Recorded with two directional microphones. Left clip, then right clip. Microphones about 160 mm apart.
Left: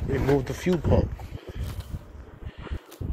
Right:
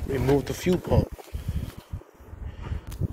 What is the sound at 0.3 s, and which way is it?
Speech, 25° right (ahead or behind).